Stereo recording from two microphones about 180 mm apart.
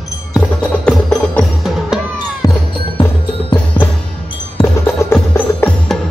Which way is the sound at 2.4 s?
20° left (ahead or behind).